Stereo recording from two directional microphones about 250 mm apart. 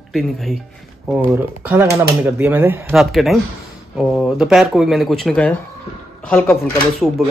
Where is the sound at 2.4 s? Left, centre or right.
Centre.